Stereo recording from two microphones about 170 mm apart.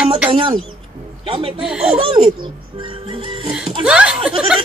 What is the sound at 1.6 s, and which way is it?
Speech, 5° right (ahead or behind).